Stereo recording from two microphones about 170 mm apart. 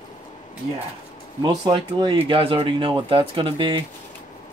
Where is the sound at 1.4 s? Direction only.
25° right (ahead or behind).